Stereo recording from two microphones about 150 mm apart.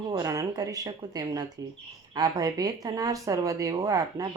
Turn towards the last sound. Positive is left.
turn(degrees=-25)  # may be behind; listen again after turning